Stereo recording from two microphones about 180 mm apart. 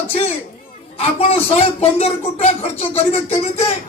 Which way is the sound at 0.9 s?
35° left (ahead or behind).